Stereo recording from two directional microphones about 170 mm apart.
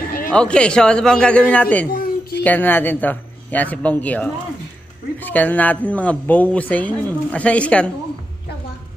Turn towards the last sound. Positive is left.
turn(degrees=5)  # may be behind; listen again after turning